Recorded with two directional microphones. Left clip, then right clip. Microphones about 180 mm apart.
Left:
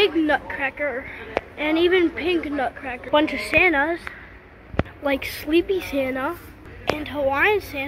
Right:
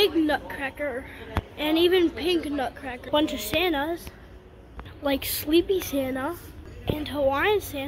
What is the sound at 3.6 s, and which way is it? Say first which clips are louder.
A woman's voice: left 7 dB; 5° right (ahead or behind).